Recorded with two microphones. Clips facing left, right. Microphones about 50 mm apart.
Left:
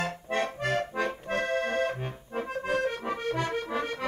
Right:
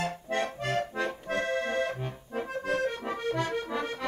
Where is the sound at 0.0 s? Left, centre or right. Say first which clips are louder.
Left 1 dB; left.